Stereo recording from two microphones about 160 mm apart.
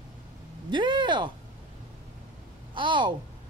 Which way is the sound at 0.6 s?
30° right (ahead or behind).